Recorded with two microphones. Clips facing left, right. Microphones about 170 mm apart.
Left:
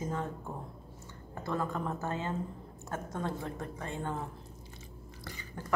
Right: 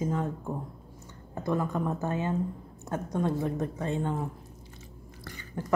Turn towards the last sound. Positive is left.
turn(degrees=-20)  # may be behind; listen again after turning